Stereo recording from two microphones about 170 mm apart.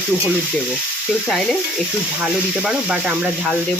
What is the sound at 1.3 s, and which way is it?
Frying, 5° left (ahead or behind).